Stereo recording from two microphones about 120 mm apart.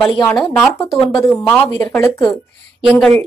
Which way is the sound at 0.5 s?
15° left (ahead or behind).